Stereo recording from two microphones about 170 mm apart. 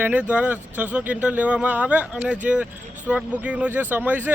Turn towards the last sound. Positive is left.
turn(degrees=-10)  # may be behind; listen again after turning